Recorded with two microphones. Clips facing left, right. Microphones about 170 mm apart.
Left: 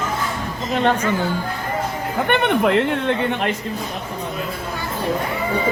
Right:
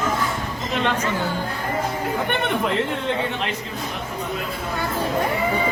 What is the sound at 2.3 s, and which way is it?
Speech, 65° left (ahead or behind).